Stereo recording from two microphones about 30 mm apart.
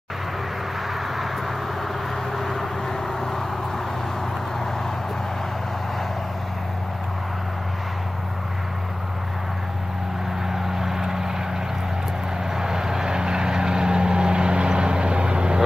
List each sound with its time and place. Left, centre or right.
2.3 s vehicle: centre
10.5 s vehicle: centre
12.5 s vehicle: centre